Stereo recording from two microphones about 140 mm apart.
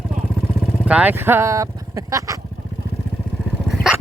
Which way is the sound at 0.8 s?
10° right (ahead or behind).